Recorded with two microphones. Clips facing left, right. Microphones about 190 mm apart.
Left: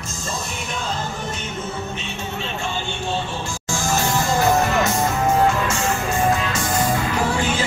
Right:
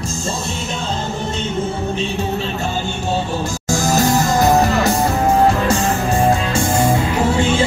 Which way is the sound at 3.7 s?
40° right (ahead or behind).